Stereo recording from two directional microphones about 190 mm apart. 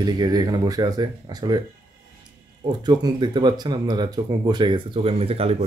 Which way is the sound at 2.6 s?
20° right (ahead or behind).